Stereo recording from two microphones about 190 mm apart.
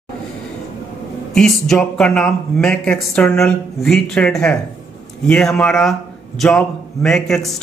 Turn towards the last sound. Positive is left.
turn(degrees=0)  # may be behind; listen again after turning